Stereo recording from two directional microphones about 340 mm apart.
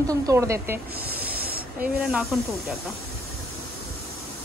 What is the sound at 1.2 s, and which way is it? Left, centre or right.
Snake, right.